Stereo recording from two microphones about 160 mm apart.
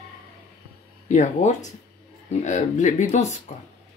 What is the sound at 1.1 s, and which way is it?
Speech, 50° left (ahead or behind).